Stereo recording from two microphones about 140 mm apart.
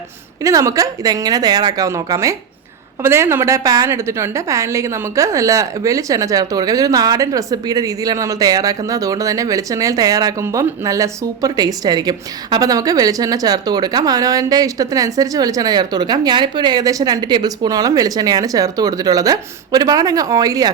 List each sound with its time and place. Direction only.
0.4 s a woman's voice: 25° right (ahead or behind)